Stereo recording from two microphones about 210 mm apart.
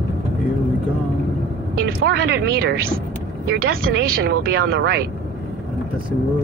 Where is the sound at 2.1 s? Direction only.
55° right (ahead or behind).